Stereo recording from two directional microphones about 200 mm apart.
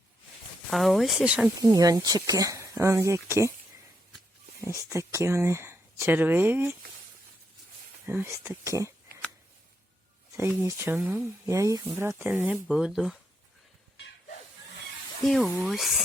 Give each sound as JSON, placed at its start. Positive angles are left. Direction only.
{"t": 0.7, "sound": "speech", "side_deg": 0}
{"t": 1.6, "sound": "speech", "side_deg": -15}
{"t": 4.6, "sound": "speech", "side_deg": -15}
{"t": 8.0, "sound": "speech", "side_deg": -10}
{"t": 10.6, "sound": "speech", "side_deg": -15}
{"t": 11.4, "sound": "speech", "side_deg": -15}
{"t": 15.3, "sound": "speech", "side_deg": 0}